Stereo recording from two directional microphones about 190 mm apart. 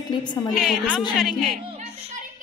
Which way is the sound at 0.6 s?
Centre (ahead or behind).